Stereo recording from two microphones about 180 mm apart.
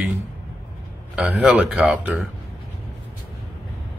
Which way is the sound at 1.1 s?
5° right (ahead or behind).